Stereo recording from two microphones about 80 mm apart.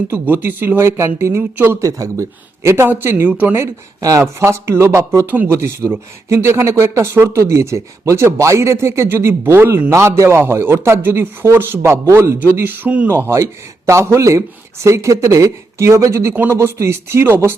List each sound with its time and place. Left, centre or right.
0.1 s speech: right
1.9 s speech: right
2.6 s speech: right
4.2 s speech: right